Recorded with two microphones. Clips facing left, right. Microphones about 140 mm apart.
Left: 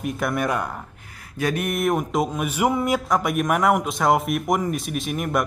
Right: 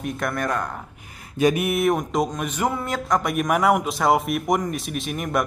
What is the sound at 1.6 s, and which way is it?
Speech, centre (ahead or behind).